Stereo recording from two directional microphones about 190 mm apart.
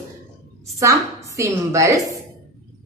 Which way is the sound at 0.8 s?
15° right (ahead or behind).